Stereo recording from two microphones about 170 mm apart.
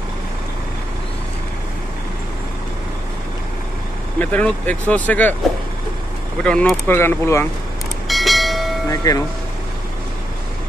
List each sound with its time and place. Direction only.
4.2 s speech: 10° left (ahead or behind)
6.4 s speech: 5° left (ahead or behind)
8.1 s train: centre (ahead or behind)
9.1 s speech: 25° left (ahead or behind)